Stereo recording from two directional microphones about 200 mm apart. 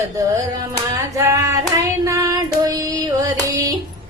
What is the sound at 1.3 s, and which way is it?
Hands, 15° right (ahead or behind).